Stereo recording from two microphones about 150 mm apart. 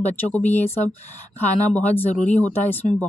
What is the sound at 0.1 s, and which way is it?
Speech, 10° left (ahead or behind).